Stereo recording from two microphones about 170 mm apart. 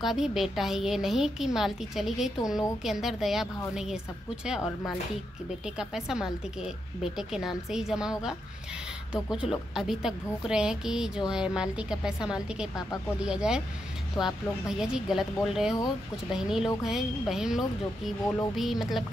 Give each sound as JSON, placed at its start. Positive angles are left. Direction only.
{"t": 0.0, "sound": "a woman's voice", "side_deg": 0}
{"t": 5.8, "sound": "a woman's voice", "side_deg": -5}
{"t": 14.2, "sound": "speech", "side_deg": 25}
{"t": 14.8, "sound": "a woman's voice", "side_deg": -5}